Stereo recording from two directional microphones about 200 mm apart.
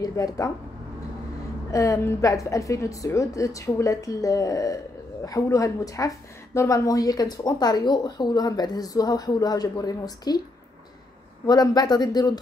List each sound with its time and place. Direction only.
0.0 s a woman's voice: 15° left (ahead or behind)
1.7 s a woman's voice: 15° left (ahead or behind)
11.4 s a woman's voice: 20° left (ahead or behind)